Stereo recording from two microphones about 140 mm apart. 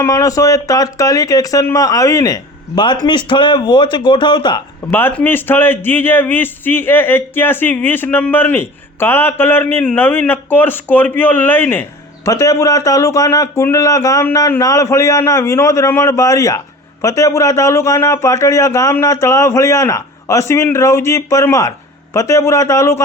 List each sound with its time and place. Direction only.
0.0 s speech: 20° left (ahead or behind)
4.9 s a man's voice: 15° left (ahead or behind)